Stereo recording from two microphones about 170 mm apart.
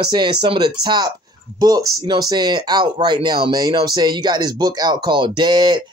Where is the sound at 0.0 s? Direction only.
25° right (ahead or behind).